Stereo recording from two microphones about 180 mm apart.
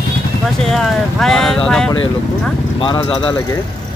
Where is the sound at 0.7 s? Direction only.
Centre (ahead or behind).